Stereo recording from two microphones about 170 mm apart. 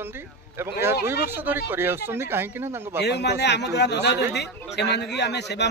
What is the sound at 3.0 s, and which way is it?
A man's voice, 80° left.